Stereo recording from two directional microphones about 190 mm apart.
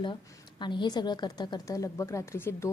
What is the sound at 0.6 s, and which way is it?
A woman's voice, 25° left (ahead or behind).